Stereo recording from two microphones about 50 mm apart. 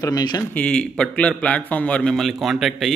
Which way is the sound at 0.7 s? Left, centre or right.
Centre.